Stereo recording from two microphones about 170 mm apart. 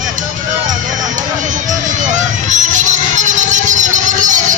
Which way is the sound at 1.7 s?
45° right (ahead or behind).